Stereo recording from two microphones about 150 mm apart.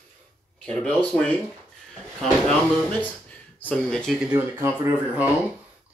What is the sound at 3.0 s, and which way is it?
Speech, 10° left (ahead or behind).